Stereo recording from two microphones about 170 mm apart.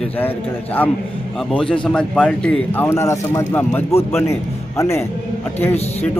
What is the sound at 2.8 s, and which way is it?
A man's voice, 15° left (ahead or behind).